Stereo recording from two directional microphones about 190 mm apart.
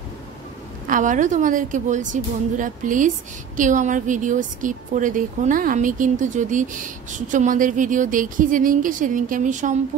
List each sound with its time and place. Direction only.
0.8 s a woman's voice: 45° right (ahead or behind)